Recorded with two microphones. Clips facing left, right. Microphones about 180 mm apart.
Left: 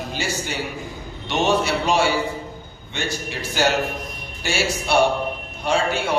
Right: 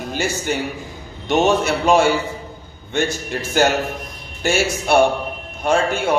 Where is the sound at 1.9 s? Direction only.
45° right (ahead or behind).